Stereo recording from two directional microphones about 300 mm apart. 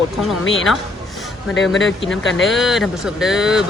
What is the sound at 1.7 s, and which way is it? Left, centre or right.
Speech, left.